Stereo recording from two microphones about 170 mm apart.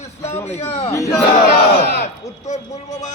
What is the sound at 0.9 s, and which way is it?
Speech, 20° left (ahead or behind).